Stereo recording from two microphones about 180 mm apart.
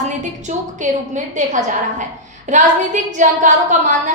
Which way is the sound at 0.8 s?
45° right (ahead or behind).